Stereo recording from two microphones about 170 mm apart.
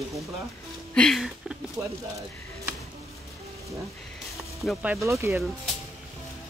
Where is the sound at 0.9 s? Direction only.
Centre (ahead or behind).